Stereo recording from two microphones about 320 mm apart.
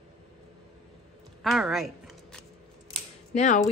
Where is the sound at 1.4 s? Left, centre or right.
Centre.